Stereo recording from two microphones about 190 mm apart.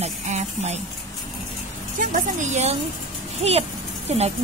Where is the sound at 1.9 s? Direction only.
45° right (ahead or behind).